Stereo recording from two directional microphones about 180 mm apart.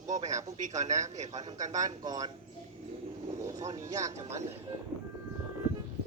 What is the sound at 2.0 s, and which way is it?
Speech, 20° right (ahead or behind).